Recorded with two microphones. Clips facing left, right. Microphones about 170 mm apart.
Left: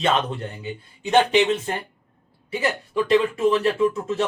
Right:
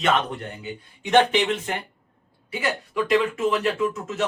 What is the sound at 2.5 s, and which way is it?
Speech, 30° left (ahead or behind).